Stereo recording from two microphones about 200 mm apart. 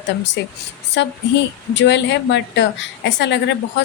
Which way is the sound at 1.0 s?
65° left (ahead or behind).